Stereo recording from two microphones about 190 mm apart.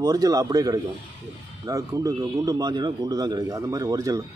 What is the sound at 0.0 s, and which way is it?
Speech, 20° right (ahead or behind).